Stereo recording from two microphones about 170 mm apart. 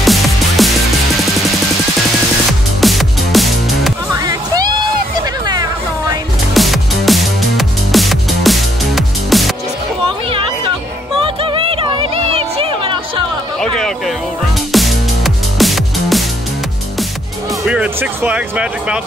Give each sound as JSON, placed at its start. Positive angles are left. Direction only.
{"t": 0.0, "sound": "music", "side_deg": 0}
{"t": 2.8, "sound": "music", "side_deg": 0}
{"t": 4.1, "sound": "music", "side_deg": -20}
{"t": 6.5, "sound": "music", "side_deg": 0}
{"t": 11.1, "sound": "music", "side_deg": -30}
{"t": 13.7, "sound": "a sound", "side_deg": 5}
{"t": 14.7, "sound": "music", "side_deg": 0}
{"t": 17.6, "sound": "music", "side_deg": -5}